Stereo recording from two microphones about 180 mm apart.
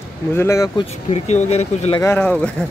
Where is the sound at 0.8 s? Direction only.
40° left (ahead or behind).